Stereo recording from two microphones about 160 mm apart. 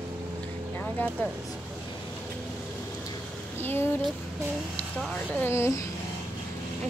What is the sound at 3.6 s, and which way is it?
Speech, 15° left (ahead or behind).